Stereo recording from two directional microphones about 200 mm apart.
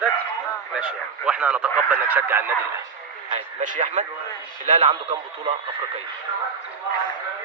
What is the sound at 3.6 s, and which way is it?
Speech, 40° right (ahead or behind).